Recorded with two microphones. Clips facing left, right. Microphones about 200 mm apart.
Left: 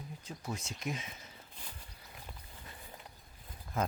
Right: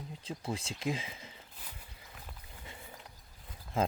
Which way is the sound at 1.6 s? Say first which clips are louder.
Left 1 dB; 5° right (ahead or behind).